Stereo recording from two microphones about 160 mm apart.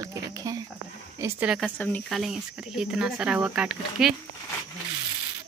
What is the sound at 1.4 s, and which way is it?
Speech, centre (ahead or behind).